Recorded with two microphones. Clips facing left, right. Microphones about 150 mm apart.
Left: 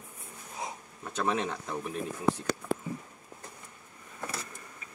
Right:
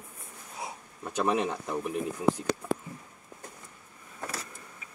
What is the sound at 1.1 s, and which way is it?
Speech, 10° right (ahead or behind).